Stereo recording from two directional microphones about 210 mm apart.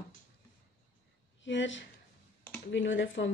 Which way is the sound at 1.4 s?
60° left (ahead or behind).